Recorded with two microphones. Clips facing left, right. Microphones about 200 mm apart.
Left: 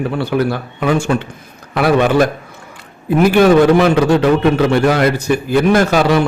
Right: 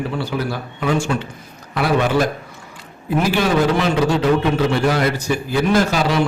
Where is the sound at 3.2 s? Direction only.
60° left (ahead or behind).